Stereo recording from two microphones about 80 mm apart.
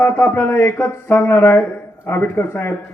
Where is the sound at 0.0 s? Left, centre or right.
Left.